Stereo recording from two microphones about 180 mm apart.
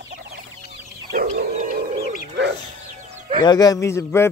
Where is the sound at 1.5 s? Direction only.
50° right (ahead or behind).